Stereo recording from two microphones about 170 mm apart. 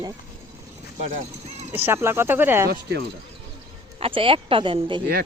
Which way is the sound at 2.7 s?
65° right (ahead or behind).